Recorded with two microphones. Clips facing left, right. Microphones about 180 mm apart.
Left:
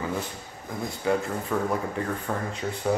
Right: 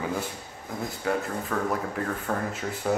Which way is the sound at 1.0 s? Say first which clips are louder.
Left 3 dB; 5° left (ahead or behind).